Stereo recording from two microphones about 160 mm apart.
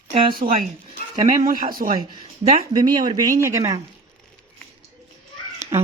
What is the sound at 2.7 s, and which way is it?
Speech, 25° right (ahead or behind).